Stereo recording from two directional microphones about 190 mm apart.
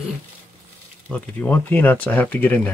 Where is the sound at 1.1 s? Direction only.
10° left (ahead or behind).